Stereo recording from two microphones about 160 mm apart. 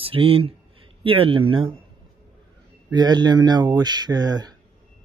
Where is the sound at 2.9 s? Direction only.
25° right (ahead or behind).